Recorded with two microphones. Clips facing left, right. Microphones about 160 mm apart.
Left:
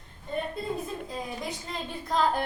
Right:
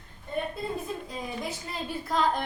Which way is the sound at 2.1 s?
5° right (ahead or behind).